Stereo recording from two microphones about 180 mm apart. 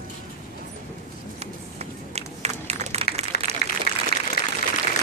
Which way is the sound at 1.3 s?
35° right (ahead or behind).